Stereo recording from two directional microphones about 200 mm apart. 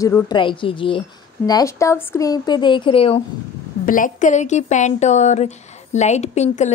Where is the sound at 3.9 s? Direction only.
40° left (ahead or behind).